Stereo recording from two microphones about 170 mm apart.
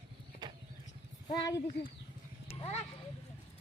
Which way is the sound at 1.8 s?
90° left.